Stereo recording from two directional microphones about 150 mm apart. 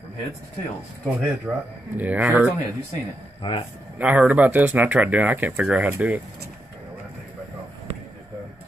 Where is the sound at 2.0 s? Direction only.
10° right (ahead or behind).